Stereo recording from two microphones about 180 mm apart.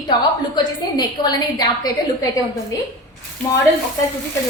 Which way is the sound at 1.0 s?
20° left (ahead or behind).